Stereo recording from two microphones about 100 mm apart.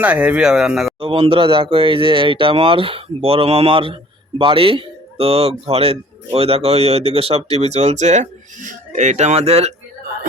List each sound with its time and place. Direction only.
0.0 s speech: 15° right (ahead or behind)
0.9 s a man's voice: 65° right (ahead or behind); by 7.9 s 90° right
9.1 s speech: 90° right